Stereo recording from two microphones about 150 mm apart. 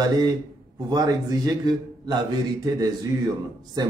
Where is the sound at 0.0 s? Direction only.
25° right (ahead or behind).